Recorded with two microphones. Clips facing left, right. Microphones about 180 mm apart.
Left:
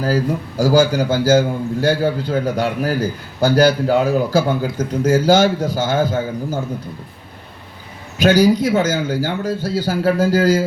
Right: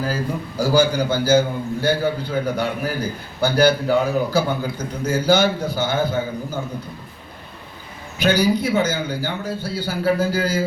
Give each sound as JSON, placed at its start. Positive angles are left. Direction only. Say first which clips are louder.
{"t": 0.0, "sound": "a man's voice", "louder": "left 5 dB", "side_deg": 40}
{"t": 8.2, "sound": "a man's voice", "louder": "left 5 dB", "side_deg": 45}